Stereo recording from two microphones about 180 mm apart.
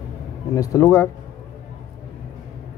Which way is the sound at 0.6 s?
20° left (ahead or behind).